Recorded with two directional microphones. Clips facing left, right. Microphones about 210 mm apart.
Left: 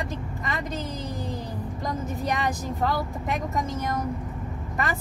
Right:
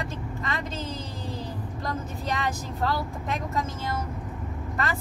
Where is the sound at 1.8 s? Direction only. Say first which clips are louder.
Left 3 dB; 15° left (ahead or behind).